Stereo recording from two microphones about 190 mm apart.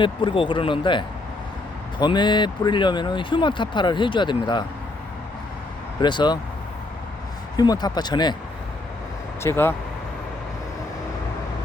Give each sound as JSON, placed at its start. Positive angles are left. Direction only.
{"t": 0.0, "sound": "speech", "side_deg": 25}
{"t": 6.0, "sound": "speech", "side_deg": 25}
{"t": 7.5, "sound": "speech", "side_deg": 20}
{"t": 9.4, "sound": "speech", "side_deg": 15}